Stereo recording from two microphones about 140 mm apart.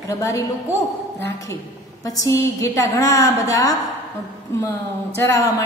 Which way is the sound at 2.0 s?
25° left (ahead or behind).